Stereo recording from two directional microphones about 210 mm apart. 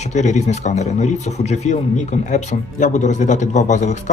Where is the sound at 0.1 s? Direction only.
35° left (ahead or behind).